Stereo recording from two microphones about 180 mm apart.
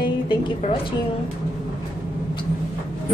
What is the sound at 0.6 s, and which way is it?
Speech, 35° left (ahead or behind).